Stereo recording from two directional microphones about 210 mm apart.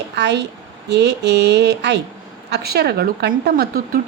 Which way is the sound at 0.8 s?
55° right (ahead or behind).